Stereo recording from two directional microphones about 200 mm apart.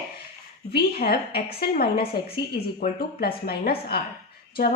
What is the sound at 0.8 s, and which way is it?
A woman's voice, 50° left (ahead or behind).